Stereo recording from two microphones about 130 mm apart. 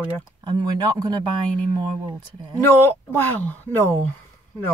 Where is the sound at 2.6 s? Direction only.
15° left (ahead or behind).